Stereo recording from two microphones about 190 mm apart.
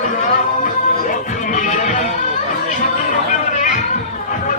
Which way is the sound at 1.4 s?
40° left (ahead or behind).